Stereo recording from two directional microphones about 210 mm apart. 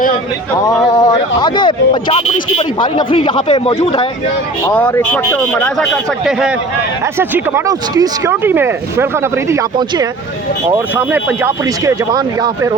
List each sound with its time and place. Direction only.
0.9 s speech: 20° left (ahead or behind)
4.6 s a man's voice: 10° left (ahead or behind)
7.0 s speech: 10° right (ahead or behind)
10.9 s speech: 10° right (ahead or behind)